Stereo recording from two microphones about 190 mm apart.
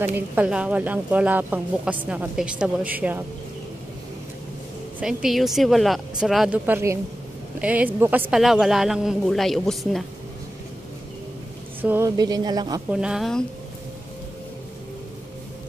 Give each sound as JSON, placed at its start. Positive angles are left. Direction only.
{"t": 0.0, "sound": "a woman's voice", "side_deg": -10}
{"t": 5.0, "sound": "speech", "side_deg": 0}
{"t": 11.8, "sound": "speech", "side_deg": -10}
{"t": 12.2, "sound": "a woman's voice", "side_deg": -20}
{"t": 12.9, "sound": "speech", "side_deg": -5}